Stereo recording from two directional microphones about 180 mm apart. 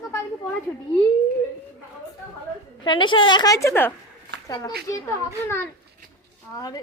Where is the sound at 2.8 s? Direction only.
25° left (ahead or behind).